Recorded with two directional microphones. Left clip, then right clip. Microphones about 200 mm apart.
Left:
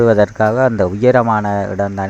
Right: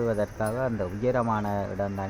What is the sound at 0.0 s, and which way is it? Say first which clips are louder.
Speech: left 16 dB; 40° left (ahead or behind).